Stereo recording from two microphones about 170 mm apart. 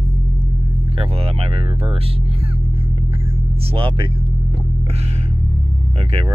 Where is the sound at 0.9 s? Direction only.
35° right (ahead or behind).